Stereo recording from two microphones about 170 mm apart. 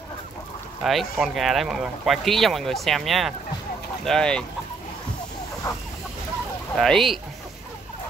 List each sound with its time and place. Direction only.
0.8 s speech: centre (ahead or behind)
6.8 s speech: centre (ahead or behind)